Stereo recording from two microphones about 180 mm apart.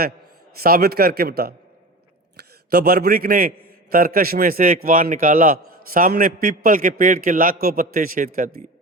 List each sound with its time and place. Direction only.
0.6 s a man's voice: 60° right (ahead or behind)